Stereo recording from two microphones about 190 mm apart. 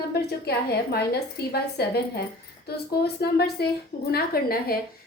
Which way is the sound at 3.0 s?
60° left (ahead or behind).